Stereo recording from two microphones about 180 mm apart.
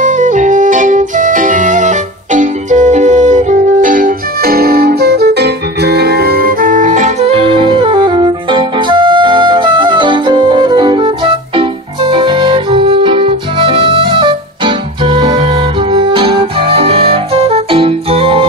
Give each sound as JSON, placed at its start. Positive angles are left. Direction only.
{"t": 0.0, "sound": "music", "side_deg": -45}